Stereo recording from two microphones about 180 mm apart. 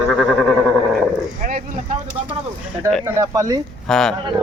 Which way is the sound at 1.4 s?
50° right (ahead or behind).